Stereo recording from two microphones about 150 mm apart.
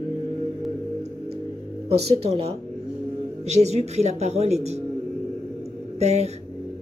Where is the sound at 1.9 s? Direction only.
45° right (ahead or behind).